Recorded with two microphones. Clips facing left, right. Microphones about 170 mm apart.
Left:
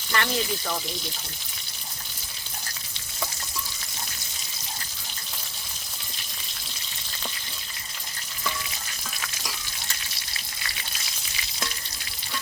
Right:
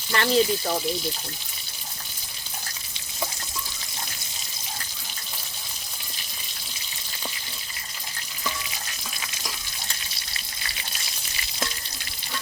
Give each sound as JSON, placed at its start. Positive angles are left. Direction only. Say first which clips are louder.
{"t": 0.1, "sound": "speech", "louder": "right 6 dB", "side_deg": -35}